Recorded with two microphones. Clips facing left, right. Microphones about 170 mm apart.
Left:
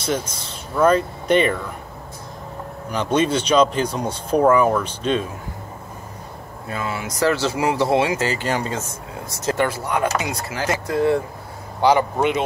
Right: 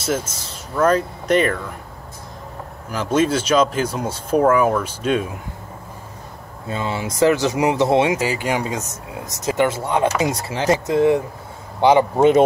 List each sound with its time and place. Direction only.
0.0 s speech: 5° right (ahead or behind)
2.9 s speech: 5° right (ahead or behind)
6.7 s speech: 25° right (ahead or behind)
10.9 s speech: 20° right (ahead or behind)